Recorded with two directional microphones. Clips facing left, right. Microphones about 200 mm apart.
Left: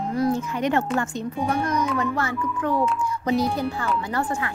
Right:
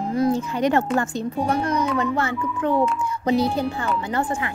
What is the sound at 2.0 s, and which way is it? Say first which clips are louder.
Speech: right 2 dB; 25° right (ahead or behind).